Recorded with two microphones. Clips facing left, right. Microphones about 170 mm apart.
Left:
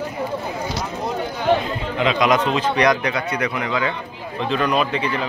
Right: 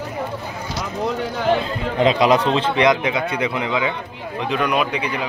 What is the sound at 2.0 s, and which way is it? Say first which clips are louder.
A man's voice: right 3 dB; 35° right (ahead or behind).